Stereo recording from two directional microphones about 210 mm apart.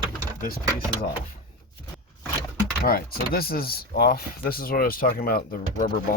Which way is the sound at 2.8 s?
45° left (ahead or behind).